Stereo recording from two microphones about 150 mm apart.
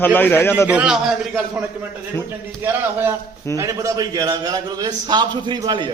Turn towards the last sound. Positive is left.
turn(degrees=-30)  # may be behind; listen again after turning